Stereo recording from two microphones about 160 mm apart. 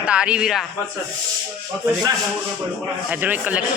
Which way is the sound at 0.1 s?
5° right (ahead or behind).